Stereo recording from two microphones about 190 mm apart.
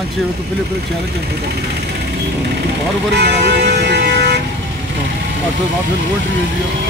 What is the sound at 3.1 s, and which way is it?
Vehicle, 60° right (ahead or behind).